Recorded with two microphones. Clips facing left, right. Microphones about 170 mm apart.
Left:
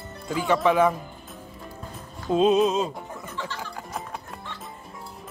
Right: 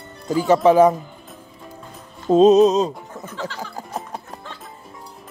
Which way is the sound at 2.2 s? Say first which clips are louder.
Right 8 dB; 40° right (ahead or behind).